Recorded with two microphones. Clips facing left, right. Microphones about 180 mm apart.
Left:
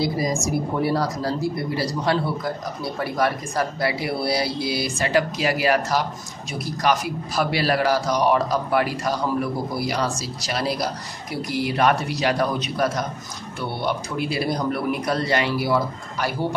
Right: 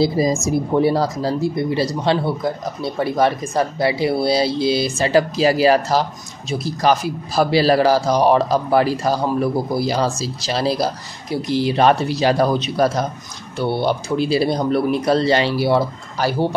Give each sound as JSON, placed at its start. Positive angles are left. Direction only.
{"t": 0.0, "sound": "a man's voice", "side_deg": -25}